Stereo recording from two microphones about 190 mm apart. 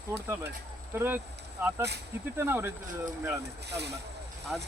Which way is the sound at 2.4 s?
10° right (ahead or behind).